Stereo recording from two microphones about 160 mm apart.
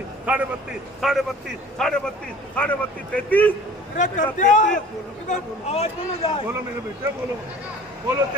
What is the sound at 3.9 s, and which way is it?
A man's voice, 50° left (ahead or behind).